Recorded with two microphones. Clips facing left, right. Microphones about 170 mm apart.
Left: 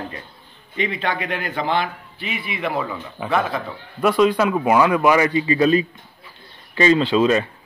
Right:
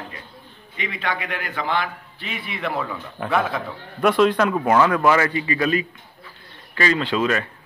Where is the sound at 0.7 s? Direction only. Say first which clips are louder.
Left 4 dB; 30° left (ahead or behind).